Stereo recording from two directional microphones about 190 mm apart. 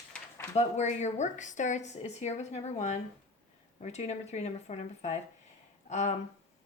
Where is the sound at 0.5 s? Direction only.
35° left (ahead or behind).